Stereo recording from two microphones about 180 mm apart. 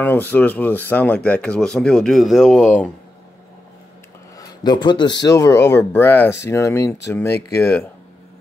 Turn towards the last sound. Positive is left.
turn(degrees=10)  # may be behind; listen again after turning